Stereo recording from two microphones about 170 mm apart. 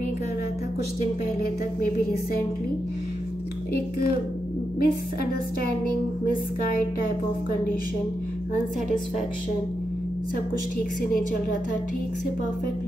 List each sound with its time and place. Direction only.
4.7 s a woman's voice: 60° left (ahead or behind)